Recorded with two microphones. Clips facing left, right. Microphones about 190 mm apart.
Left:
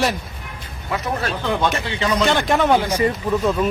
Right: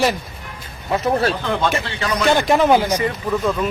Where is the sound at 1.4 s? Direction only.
15° left (ahead or behind).